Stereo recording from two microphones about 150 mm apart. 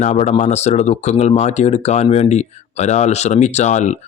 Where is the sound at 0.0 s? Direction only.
50° left (ahead or behind).